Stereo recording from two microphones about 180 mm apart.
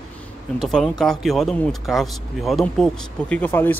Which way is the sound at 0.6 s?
Centre (ahead or behind).